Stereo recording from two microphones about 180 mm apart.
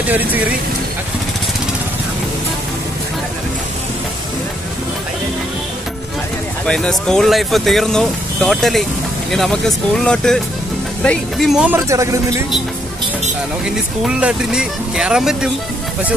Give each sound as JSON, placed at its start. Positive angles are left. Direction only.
{"t": 6.6, "sound": "speech", "side_deg": 5}
{"t": 11.7, "sound": "speech", "side_deg": -15}
{"t": 14.0, "sound": "speech", "side_deg": -5}